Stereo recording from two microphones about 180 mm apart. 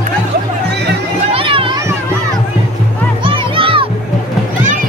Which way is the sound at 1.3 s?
30° right (ahead or behind).